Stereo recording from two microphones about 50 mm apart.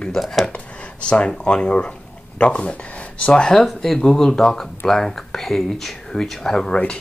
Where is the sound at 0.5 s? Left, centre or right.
Left.